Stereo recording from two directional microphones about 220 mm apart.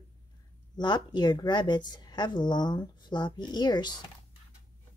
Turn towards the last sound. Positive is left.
turn(degrees=20)  # may be behind; listen again after turning